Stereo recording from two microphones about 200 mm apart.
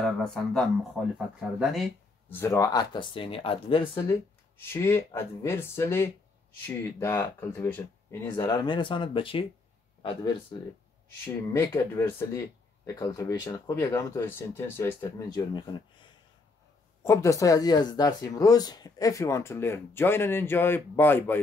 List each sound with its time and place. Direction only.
0.0 s speech: 5° left (ahead or behind)
2.2 s speech: 10° left (ahead or behind)
4.7 s speech: 10° left (ahead or behind)
11.5 s speech: 15° left (ahead or behind)
17.0 s speech: 15° left (ahead or behind)